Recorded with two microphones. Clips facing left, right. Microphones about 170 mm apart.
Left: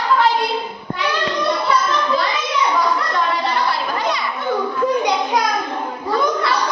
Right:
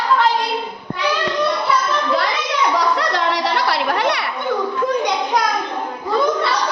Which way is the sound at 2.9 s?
80° right.